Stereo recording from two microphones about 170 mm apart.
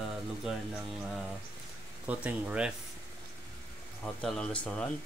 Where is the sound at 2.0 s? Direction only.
5° right (ahead or behind).